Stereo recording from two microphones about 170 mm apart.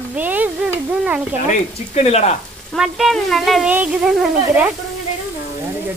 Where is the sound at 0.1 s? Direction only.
10° right (ahead or behind).